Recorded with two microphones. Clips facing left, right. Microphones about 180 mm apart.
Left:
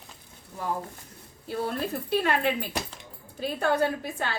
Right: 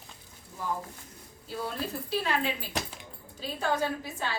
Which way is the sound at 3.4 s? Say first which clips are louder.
Left 5 dB; 60° left (ahead or behind).